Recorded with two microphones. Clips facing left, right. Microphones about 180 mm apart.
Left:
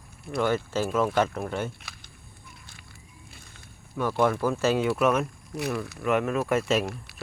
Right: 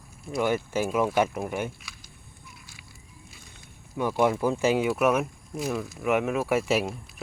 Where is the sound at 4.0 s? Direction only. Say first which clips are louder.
Even; 15° right (ahead or behind).